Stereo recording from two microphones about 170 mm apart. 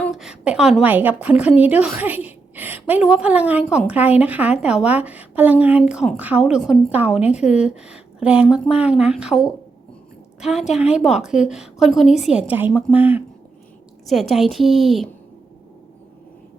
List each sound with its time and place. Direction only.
0.0 s a woman's voice: centre (ahead or behind)
14.1 s a woman's voice: centre (ahead or behind)